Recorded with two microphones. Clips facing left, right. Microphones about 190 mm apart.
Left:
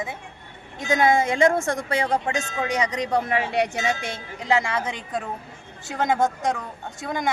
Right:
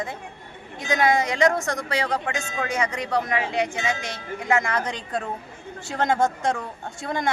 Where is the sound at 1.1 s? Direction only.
50° left (ahead or behind).